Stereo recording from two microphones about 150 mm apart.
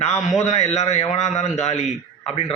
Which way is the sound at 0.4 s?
45° left (ahead or behind).